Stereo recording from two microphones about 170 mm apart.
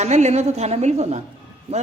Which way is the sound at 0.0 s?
40° right (ahead or behind).